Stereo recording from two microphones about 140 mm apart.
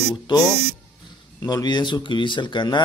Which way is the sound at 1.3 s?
30° left (ahead or behind).